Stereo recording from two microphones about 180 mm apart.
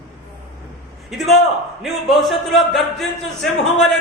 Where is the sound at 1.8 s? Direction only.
Centre (ahead or behind).